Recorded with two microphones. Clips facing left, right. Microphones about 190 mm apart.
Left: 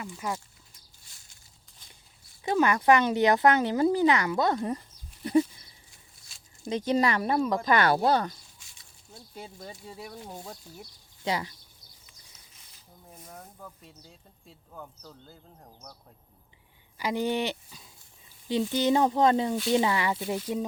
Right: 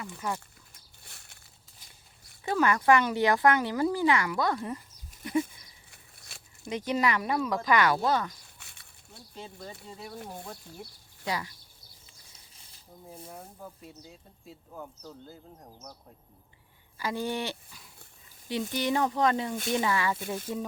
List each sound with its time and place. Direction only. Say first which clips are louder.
0.3 s livestock: left 1 dB; 60° right (ahead or behind)
2.4 s speech: left 2 dB; 20° left (ahead or behind)
5.2 s goat: left 5 dB; 30° left (ahead or behind)
5.9 s a sound: right 5 dB; 65° right (ahead or behind)
6.7 s speech: left 3 dB; 25° left (ahead or behind)
8.5 s a sound: right 3 dB; 60° right (ahead or behind)
11.3 s speech: left 3 dB; 25° left (ahead or behind)
13.8 s speech: right 4 dB; 10° right (ahead or behind)
17.0 s speech: left 4 dB; 20° left (ahead or behind)